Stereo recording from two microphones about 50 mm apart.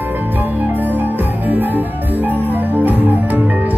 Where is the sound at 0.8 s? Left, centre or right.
Right.